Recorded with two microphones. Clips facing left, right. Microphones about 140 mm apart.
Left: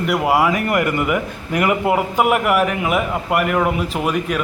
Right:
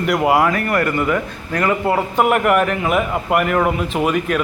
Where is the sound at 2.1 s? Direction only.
5° left (ahead or behind).